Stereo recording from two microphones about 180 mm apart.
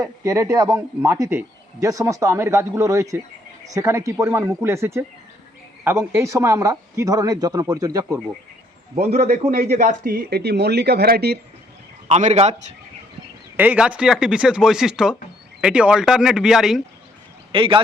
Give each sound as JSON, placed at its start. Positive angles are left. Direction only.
{"t": 0.0, "sound": "a man's voice", "side_deg": -15}
{"t": 9.3, "sound": "speech", "side_deg": -60}
{"t": 12.0, "sound": "a man's voice", "side_deg": -40}
{"t": 13.6, "sound": "speech", "side_deg": -5}
{"t": 17.5, "sound": "speech", "side_deg": -30}